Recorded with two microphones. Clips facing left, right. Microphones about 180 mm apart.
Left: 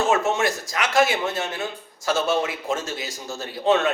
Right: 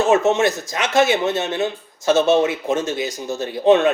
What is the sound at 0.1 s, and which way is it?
Speech, 20° right (ahead or behind).